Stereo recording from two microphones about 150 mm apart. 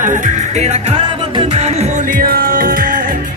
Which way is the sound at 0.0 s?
60° right (ahead or behind).